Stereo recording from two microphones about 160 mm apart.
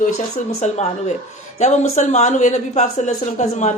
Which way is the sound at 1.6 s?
45° left (ahead or behind).